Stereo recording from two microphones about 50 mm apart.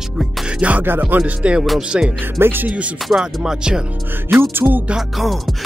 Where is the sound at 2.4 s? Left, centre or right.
Right.